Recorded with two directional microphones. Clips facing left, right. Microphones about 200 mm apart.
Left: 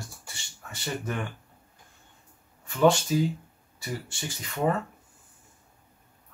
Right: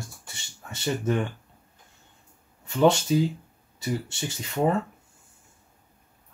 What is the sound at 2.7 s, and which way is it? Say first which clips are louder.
Speech: right 1 dB; 25° right (ahead or behind).